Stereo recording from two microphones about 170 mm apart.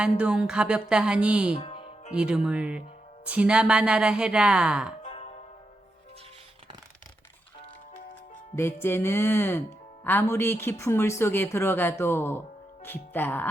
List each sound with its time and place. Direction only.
0.0 s speech: 5° right (ahead or behind)
1.5 s music: 35° left (ahead or behind)
2.1 s speech: 5° right (ahead or behind)
5.0 s music: 40° left (ahead or behind)
8.5 s speech: 15° left (ahead or behind)